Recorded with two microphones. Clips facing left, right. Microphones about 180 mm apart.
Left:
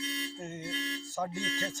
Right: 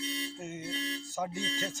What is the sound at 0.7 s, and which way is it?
Music, 35° right (ahead or behind).